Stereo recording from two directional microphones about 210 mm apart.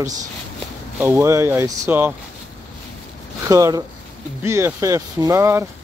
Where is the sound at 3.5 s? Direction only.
15° right (ahead or behind).